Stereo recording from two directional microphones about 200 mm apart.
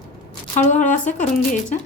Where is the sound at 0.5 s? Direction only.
40° left (ahead or behind).